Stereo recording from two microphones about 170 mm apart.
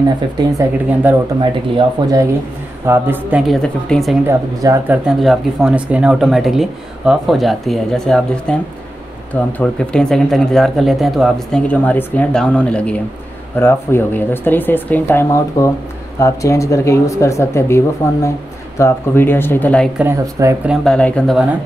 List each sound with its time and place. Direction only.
1.4 s speech: 25° right (ahead or behind)
2.9 s speech: 10° right (ahead or behind)
3.6 s speech: 5° left (ahead or behind)
4.3 s speech: 15° right (ahead or behind)
5.0 s speech: centre (ahead or behind)
20.0 s speech: 15° right (ahead or behind)
20.6 s speech: centre (ahead or behind)